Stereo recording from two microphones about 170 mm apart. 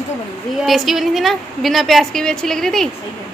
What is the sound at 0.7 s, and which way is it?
A woman's voice, centre (ahead or behind).